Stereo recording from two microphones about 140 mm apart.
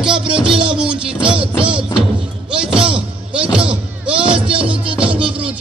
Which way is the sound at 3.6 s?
5° right (ahead or behind).